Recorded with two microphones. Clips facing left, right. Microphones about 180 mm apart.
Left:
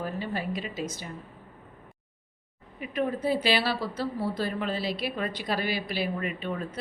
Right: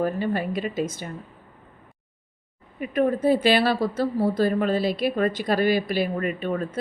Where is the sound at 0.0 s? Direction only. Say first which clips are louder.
Right 8 dB; 55° right (ahead or behind).